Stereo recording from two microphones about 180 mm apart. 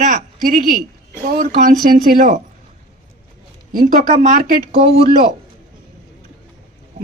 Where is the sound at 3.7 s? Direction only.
50° right (ahead or behind).